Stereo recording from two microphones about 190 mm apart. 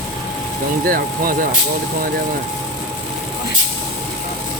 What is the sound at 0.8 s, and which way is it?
Speech, 50° right (ahead or behind).